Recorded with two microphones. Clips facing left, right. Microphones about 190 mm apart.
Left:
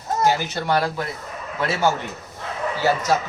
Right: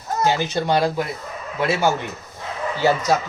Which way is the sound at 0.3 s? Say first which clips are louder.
Right 2 dB; 15° right (ahead or behind).